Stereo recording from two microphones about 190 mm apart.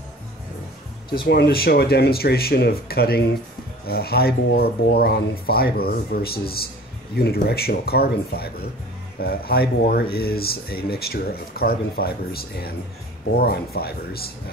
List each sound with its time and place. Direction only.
1.3 s speech: 55° left (ahead or behind)